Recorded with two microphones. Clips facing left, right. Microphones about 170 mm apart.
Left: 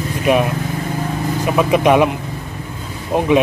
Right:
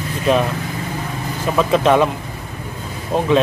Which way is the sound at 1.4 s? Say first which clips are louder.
Left 1 dB; 15° left (ahead or behind).